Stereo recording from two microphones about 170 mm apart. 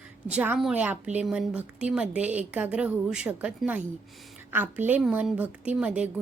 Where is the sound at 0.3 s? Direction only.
5° right (ahead or behind).